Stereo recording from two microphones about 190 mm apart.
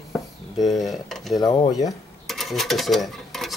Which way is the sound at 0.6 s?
Centre (ahead or behind).